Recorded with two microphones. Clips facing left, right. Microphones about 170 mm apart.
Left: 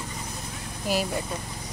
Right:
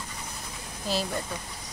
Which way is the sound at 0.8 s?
10° left (ahead or behind).